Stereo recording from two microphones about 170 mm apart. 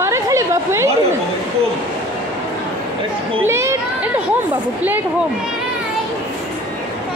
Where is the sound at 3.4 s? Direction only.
15° right (ahead or behind).